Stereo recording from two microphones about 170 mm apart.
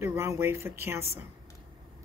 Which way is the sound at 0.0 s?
15° right (ahead or behind).